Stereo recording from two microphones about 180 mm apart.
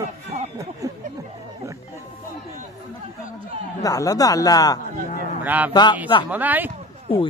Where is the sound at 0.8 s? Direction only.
20° right (ahead or behind).